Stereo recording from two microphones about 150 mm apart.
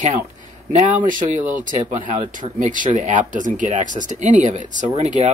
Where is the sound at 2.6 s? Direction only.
55° right (ahead or behind).